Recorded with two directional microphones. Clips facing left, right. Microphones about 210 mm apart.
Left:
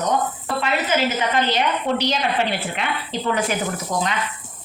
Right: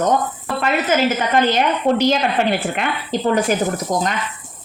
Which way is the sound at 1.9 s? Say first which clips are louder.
Right 5 dB; 50° right (ahead or behind).